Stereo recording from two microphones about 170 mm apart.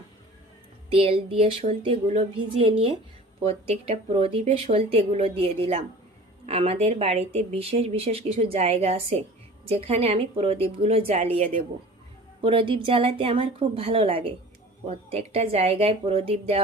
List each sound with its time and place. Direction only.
0.9 s speech: 35° right (ahead or behind)